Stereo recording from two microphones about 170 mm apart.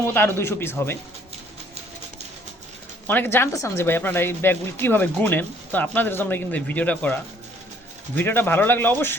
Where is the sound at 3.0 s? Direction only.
10° left (ahead or behind).